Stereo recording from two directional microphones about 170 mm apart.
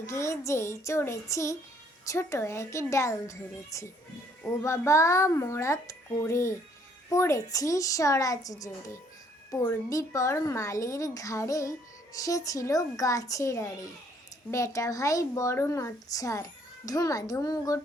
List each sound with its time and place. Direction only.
0.0 s speech: 15° left (ahead or behind)